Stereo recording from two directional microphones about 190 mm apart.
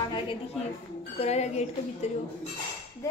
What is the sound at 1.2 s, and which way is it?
Speech, 35° left (ahead or behind).